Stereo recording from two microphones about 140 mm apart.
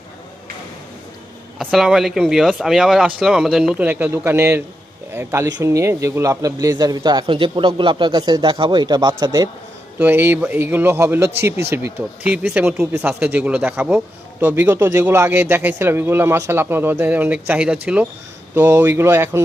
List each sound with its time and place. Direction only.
1.5 s a man's voice: centre (ahead or behind); by 9.5 s 30° right (ahead or behind)
10.0 s a man's voice: 15° right (ahead or behind)